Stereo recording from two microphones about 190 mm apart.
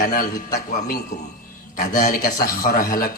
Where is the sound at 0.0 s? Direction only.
50° left (ahead or behind).